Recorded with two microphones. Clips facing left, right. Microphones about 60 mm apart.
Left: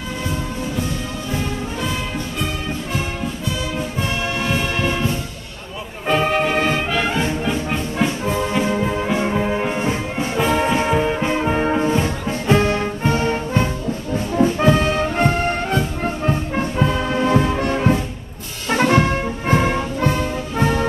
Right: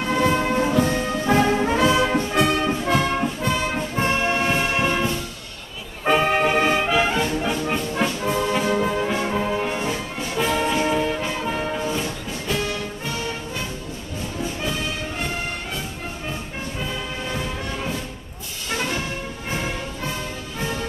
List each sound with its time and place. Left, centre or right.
0.1 s music: right
4.1 s music: right
6.0 s music: centre
8.3 s music: centre
8.6 s brass instrument: centre; by 10.4 s left
10.5 s music: left